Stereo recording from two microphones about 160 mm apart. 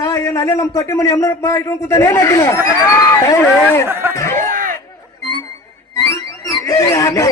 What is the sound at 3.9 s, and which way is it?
Speech, 15° right (ahead or behind).